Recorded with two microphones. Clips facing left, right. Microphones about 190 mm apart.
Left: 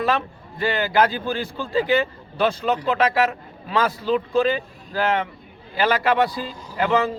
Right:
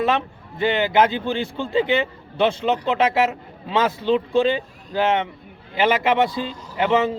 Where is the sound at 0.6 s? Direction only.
20° right (ahead or behind).